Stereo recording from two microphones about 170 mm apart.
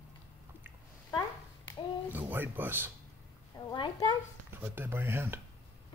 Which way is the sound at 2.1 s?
10° right (ahead or behind).